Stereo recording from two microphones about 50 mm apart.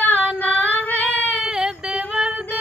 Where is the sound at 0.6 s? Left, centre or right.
Left.